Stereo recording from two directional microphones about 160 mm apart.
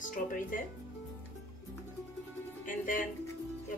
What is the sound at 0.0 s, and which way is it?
Speech, 55° left (ahead or behind).